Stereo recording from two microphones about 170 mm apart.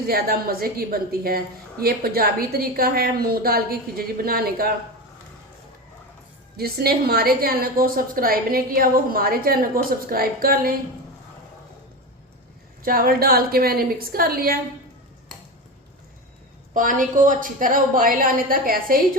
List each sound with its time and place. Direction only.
0.1 s a woman's voice: 60° right (ahead or behind)
6.6 s a woman's voice: 65° right (ahead or behind)
12.8 s a woman's voice: 60° right (ahead or behind)
16.7 s a woman's voice: 50° right (ahead or behind)